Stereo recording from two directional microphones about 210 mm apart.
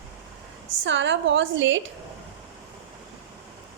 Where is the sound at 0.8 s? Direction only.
60° right (ahead or behind).